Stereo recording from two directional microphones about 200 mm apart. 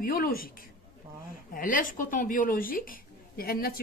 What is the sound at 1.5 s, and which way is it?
A woman's voice, 45° left (ahead or behind).